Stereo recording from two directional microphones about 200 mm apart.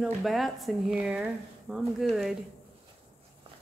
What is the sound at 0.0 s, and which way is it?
Speech, centre (ahead or behind).